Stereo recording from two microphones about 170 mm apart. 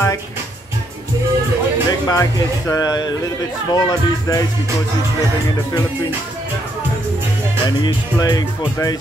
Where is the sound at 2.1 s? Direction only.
20° left (ahead or behind).